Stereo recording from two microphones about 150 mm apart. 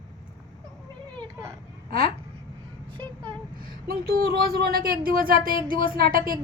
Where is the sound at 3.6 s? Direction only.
85° right.